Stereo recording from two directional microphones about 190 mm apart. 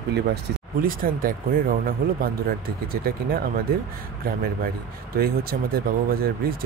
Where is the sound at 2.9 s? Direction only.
50° right (ahead or behind).